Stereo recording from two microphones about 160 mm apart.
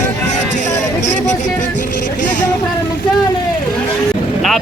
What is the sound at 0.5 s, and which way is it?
Music, 50° left (ahead or behind).